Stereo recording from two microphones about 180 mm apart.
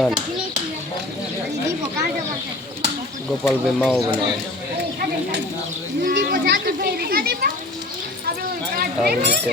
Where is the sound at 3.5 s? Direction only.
5° left (ahead or behind).